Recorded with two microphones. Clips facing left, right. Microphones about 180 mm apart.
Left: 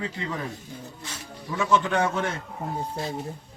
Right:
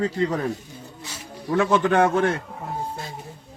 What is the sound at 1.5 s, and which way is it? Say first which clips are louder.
Speech: right 5 dB; 60° right (ahead or behind).